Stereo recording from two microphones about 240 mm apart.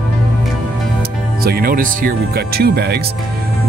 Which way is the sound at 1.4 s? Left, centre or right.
Right.